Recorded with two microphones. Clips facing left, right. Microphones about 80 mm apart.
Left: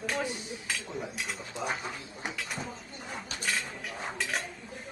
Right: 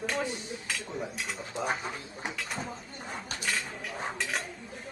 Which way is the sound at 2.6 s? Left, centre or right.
Right.